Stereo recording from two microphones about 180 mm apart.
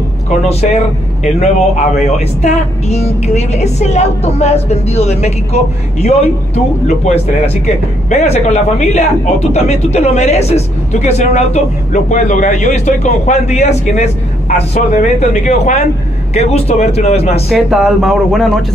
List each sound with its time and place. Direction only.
0.3 s speech: 40° left (ahead or behind)
17.5 s speech: centre (ahead or behind)